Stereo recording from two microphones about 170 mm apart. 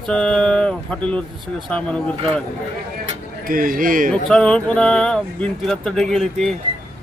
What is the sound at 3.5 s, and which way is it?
Speech, 55° right (ahead or behind).